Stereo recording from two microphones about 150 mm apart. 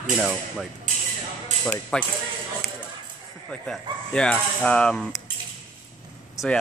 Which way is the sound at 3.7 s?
5° left (ahead or behind).